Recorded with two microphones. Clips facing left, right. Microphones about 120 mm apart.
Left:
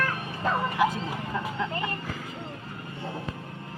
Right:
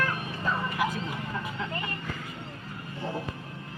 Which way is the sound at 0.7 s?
30° left (ahead or behind).